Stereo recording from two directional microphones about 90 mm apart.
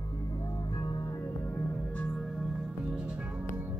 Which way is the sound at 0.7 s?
40° left (ahead or behind).